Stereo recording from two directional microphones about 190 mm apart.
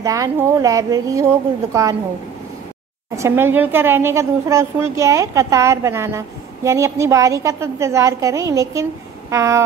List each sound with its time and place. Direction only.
0.0 s a woman's voice: 15° right (ahead or behind)
3.2 s a woman's voice: 15° right (ahead or behind)